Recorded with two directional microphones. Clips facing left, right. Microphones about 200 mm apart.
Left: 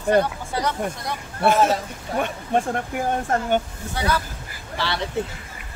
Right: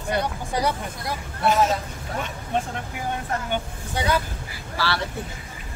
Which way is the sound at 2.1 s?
55° left (ahead or behind).